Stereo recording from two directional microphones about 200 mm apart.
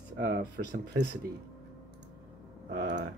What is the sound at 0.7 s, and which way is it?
Speech, 55° right (ahead or behind).